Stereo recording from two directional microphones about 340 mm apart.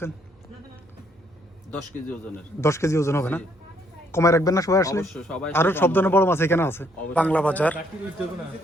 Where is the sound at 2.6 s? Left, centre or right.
Centre.